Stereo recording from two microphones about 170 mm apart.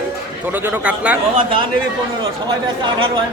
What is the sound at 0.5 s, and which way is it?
Speech, 10° right (ahead or behind).